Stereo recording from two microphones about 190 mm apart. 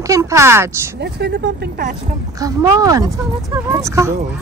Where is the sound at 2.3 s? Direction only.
20° right (ahead or behind).